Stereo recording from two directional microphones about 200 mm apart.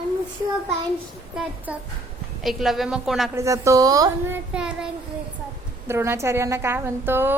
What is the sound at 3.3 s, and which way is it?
A woman's voice, 15° right (ahead or behind).